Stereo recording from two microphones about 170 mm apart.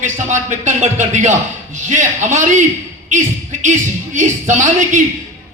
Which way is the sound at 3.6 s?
45° right (ahead or behind).